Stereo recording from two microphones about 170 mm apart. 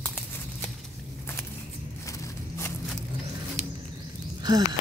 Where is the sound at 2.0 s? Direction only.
20° left (ahead or behind).